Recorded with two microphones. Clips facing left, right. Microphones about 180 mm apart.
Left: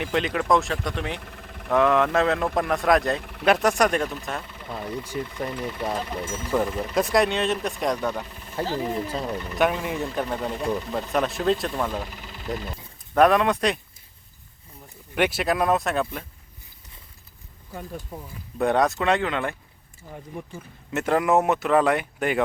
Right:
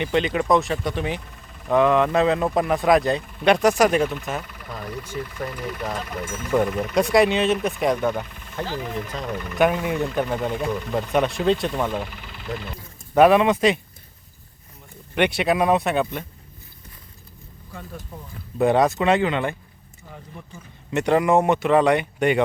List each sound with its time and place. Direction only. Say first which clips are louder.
0.0 s speech: right 3 dB; centre (ahead or behind)
1.2 s vehicle: left 4 dB; 65° left (ahead or behind)
1.7 s speech: right 2 dB; centre (ahead or behind)
3.2 s speech: right 2 dB; 70° left (ahead or behind)
3.4 s speech: right 3 dB; centre (ahead or behind)
4.4 s speech: left 1 dB; 25° left (ahead or behind)
6.9 s speech: right 4 dB; centre (ahead or behind)
8.6 s speech: left 2 dB; 30° left (ahead or behind)
9.6 s speech: right 4 dB; centre (ahead or behind)
12.1 s speech: even; 35° left (ahead or behind)
13.1 s speech: right 3 dB; centre (ahead or behind)
15.1 s speech: right 3 dB; 5° left (ahead or behind)
18.6 s speech: right 3 dB; centre (ahead or behind)
20.9 s speech: right 3 dB; centre (ahead or behind)